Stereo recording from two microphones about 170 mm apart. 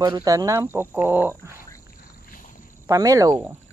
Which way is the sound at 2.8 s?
20° right (ahead or behind).